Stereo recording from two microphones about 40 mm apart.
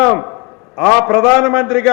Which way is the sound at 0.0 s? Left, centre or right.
Centre.